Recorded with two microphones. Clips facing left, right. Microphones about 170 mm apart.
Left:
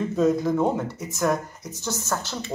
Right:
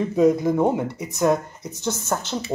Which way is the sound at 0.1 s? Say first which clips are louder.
Right 4 dB; 15° right (ahead or behind).